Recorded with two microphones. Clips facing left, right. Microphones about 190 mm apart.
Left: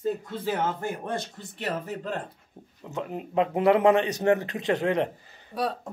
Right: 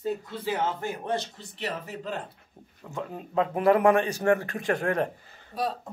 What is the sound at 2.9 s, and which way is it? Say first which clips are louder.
Speech: left 3 dB; 20° left (ahead or behind).